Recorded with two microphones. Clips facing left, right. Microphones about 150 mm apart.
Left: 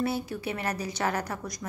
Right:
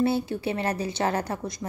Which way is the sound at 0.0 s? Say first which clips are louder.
Right 5 dB; 25° right (ahead or behind).